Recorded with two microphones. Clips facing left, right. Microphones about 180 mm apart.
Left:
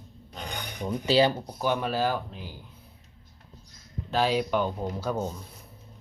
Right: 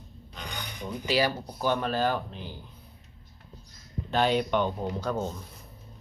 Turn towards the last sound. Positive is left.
turn(degrees=10)  # may be behind; listen again after turning